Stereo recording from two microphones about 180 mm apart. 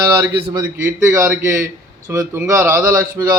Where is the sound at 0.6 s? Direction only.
15° right (ahead or behind).